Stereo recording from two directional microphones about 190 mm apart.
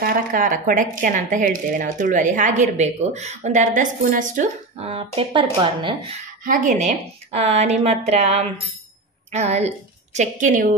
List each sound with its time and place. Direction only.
0.0 s speech: 45° right (ahead or behind)
4.9 s speech: 30° right (ahead or behind)
6.4 s a woman's voice: 45° right (ahead or behind)